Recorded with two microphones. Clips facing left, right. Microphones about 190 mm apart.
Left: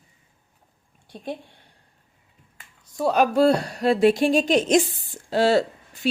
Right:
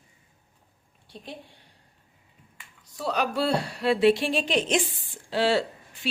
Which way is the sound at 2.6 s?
45° left (ahead or behind).